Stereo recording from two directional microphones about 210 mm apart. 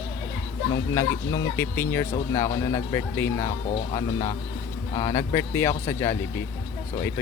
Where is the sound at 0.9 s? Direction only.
10° left (ahead or behind).